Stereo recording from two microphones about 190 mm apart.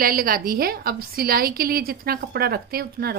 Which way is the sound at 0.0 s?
50° right (ahead or behind).